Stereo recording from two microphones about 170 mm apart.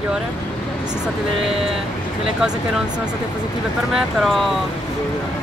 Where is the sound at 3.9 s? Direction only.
Centre (ahead or behind).